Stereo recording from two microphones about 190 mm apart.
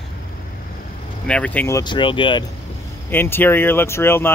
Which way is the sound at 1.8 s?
25° left (ahead or behind).